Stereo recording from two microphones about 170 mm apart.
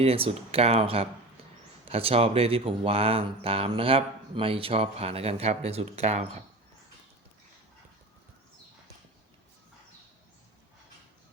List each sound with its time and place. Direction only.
0.0 s speech: 35° right (ahead or behind)